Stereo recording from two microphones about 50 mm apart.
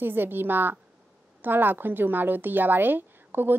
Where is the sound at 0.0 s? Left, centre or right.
Right.